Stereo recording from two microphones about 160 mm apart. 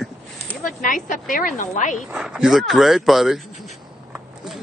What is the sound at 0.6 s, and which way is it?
A woman's voice, 55° left (ahead or behind).